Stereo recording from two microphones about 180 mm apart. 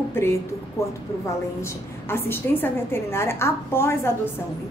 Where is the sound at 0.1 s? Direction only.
15° left (ahead or behind).